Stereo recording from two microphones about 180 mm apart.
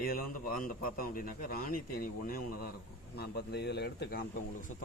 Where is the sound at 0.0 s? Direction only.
50° left (ahead or behind).